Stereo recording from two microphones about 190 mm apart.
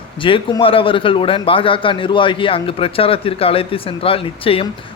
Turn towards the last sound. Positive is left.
turn(degrees=30)  # may be behind; listen again after turning